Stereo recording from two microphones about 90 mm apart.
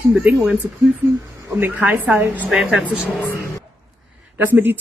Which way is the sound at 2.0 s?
20° right (ahead or behind).